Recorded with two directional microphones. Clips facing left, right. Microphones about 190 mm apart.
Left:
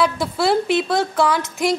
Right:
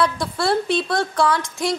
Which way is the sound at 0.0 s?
5° left (ahead or behind).